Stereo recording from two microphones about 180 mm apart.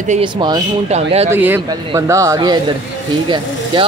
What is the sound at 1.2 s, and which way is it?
A man's voice, 10° right (ahead or behind).